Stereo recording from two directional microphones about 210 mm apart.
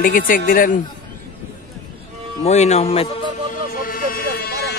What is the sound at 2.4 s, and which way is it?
Speech, 30° left (ahead or behind).